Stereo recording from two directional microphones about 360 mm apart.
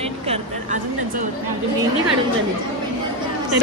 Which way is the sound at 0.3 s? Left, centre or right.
Centre.